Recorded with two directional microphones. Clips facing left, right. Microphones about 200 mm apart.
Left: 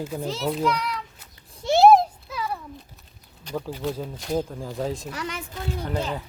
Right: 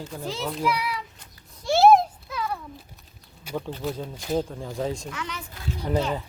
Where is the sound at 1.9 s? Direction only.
5° left (ahead or behind).